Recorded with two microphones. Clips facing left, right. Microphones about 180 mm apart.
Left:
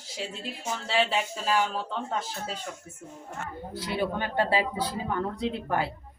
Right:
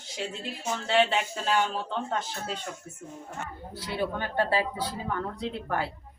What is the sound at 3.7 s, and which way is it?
Speech, 15° left (ahead or behind).